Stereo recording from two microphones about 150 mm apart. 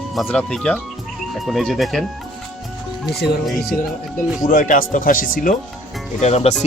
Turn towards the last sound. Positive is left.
turn(degrees=45)  # may be behind; listen again after turning